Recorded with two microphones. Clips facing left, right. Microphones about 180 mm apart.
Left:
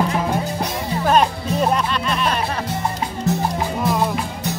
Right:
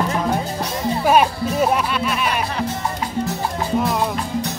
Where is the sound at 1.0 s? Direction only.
10° right (ahead or behind).